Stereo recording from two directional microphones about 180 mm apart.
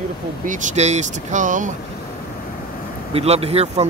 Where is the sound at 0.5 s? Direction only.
45° right (ahead or behind).